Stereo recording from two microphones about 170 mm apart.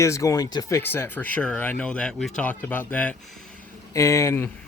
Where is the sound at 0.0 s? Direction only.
20° left (ahead or behind).